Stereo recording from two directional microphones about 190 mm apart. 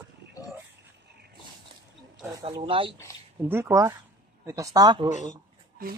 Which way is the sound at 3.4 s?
10° right (ahead or behind).